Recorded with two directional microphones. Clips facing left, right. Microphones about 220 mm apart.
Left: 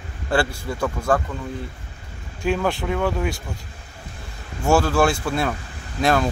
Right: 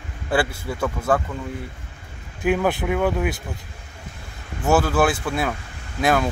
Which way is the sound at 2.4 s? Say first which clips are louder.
Right 2 dB; 10° right (ahead or behind).